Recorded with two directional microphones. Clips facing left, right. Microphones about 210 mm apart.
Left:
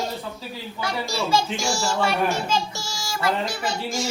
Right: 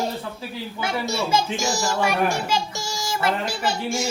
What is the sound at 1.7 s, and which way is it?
A child's voice, 15° right (ahead or behind).